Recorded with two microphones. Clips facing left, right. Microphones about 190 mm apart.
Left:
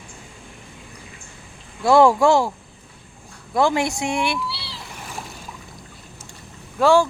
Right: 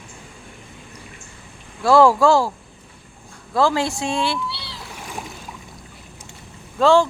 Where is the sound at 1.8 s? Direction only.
20° left (ahead or behind).